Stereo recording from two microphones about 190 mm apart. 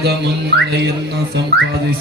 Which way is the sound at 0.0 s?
60° right (ahead or behind).